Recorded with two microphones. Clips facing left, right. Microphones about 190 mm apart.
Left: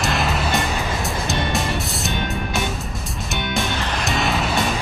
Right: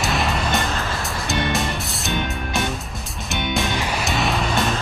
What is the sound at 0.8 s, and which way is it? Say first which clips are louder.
Music: left 2 dB; 15° left (ahead or behind).